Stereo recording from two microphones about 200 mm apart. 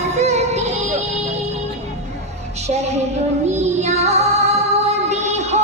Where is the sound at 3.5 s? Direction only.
35° right (ahead or behind).